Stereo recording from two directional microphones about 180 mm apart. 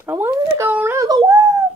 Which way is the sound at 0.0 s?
15° right (ahead or behind).